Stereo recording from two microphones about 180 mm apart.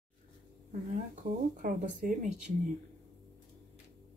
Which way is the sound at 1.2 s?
50° right (ahead or behind).